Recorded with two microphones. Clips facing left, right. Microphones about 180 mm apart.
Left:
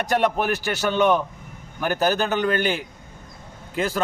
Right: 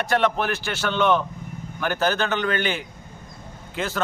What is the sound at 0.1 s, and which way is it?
A man's voice, 10° left (ahead or behind).